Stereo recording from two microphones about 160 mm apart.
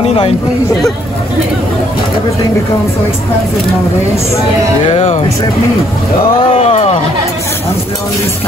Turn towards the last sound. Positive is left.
turn(degrees=35)  # may be behind; listen again after turning